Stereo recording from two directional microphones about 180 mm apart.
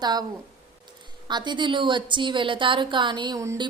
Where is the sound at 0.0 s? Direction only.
20° right (ahead or behind).